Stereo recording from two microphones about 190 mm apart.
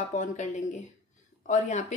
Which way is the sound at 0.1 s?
40° left (ahead or behind).